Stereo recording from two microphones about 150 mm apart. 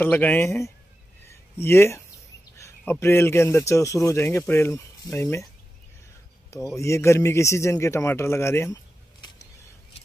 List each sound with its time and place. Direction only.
0.0 s speech: 10° left (ahead or behind)
1.3 s a sound: 15° left (ahead or behind)
2.8 s speech: 15° left (ahead or behind)
6.5 s a man's voice: 20° left (ahead or behind)